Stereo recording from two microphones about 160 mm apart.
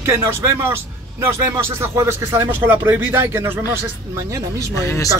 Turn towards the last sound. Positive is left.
turn(degrees=20)  # may be behind; listen again after turning